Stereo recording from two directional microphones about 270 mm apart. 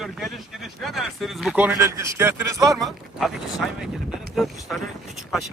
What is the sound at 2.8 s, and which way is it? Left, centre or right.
Speech, centre.